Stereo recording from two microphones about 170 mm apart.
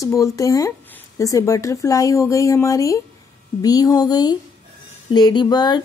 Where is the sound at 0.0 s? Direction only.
20° left (ahead or behind).